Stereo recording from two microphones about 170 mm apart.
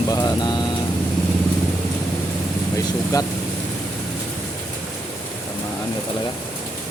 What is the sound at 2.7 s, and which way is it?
Speech, 20° left (ahead or behind).